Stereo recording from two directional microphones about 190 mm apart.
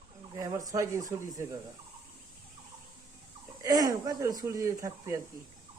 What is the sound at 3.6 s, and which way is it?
Speech, 20° right (ahead or behind).